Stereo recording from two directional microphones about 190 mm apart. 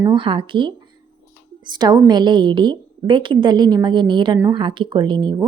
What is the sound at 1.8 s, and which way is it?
Speech, 20° right (ahead or behind).